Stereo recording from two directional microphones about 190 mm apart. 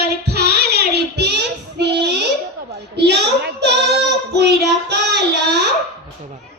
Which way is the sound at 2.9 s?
60° right (ahead or behind).